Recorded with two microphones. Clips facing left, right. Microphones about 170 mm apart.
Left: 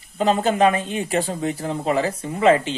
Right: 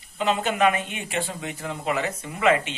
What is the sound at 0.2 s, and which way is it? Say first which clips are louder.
Speech: left 4 dB; 35° left (ahead or behind).